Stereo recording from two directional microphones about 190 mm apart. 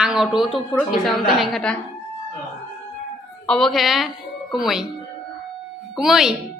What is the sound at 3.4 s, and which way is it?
A woman's voice, 5° left (ahead or behind).